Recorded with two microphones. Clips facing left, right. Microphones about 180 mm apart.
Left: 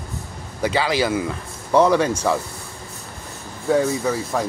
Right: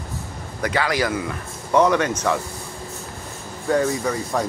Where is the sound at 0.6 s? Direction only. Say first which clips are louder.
Left 2 dB; 25° left (ahead or behind).